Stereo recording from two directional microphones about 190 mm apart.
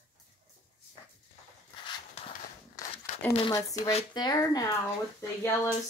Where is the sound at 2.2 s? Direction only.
35° left (ahead or behind).